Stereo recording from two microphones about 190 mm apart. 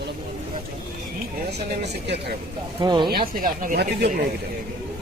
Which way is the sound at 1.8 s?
65° right (ahead or behind).